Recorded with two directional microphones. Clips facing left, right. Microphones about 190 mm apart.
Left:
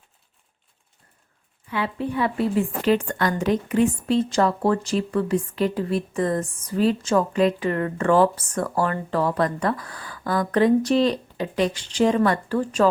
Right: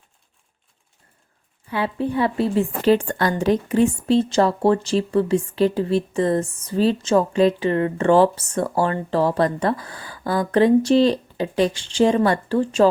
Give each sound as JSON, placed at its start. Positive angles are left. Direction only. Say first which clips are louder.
{"t": 1.7, "sound": "a woman's voice", "louder": "right 3 dB", "side_deg": -30}